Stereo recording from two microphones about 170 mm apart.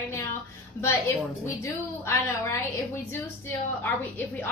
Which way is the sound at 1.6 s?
15° left (ahead or behind).